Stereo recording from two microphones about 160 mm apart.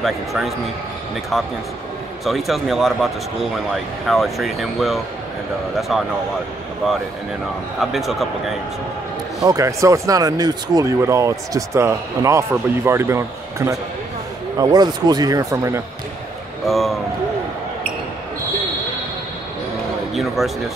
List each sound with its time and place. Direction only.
0.0 s speech: centre (ahead or behind)
4.1 s speech: centre (ahead or behind)
7.8 s speech: centre (ahead or behind)
9.4 s speech: 20° right (ahead or behind)
16.6 s speech: centre (ahead or behind)
20.2 s speech: centre (ahead or behind)